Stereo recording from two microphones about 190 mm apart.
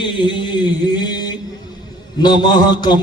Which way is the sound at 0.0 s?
25° left (ahead or behind).